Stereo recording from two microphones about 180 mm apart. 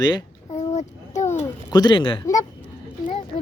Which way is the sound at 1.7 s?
25° left (ahead or behind).